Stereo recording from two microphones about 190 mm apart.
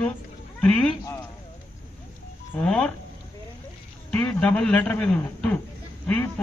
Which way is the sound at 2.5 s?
5° left (ahead or behind).